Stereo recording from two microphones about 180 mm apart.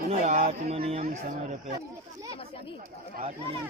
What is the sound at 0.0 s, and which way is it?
Speech, 40° right (ahead or behind).